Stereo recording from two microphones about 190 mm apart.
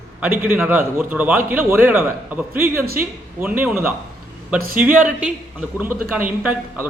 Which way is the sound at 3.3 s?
10° right (ahead or behind).